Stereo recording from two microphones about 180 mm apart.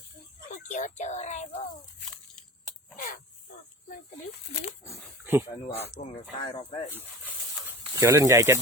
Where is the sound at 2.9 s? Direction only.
50° left (ahead or behind).